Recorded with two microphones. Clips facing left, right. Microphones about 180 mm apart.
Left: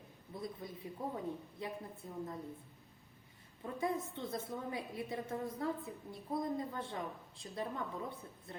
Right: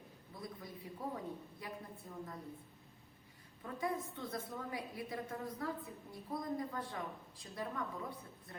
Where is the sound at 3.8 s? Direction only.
25° left (ahead or behind).